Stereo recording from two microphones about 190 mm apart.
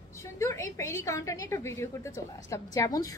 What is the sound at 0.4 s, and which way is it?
A woman's voice, 15° left (ahead or behind).